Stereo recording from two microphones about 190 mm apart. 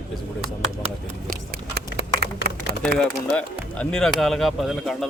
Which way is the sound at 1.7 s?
60° right (ahead or behind).